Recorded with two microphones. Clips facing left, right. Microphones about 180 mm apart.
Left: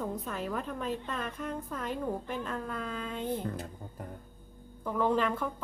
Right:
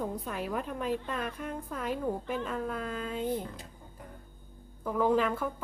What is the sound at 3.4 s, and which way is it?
Music, 50° left (ahead or behind).